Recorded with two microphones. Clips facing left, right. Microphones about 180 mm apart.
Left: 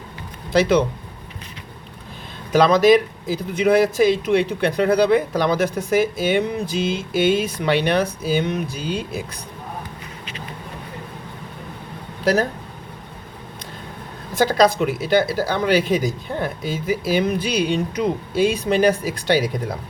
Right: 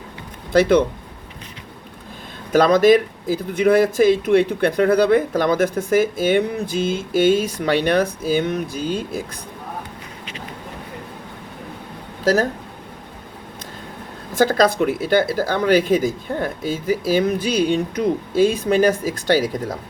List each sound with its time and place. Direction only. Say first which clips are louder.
0.5 s speech: right 2 dB; 50° right (ahead or behind)
2.5 s speech: right 1 dB; 50° right (ahead or behind)
12.2 s speech: right 1 dB; 40° right (ahead or behind)
14.3 s speech: even; 50° right (ahead or behind)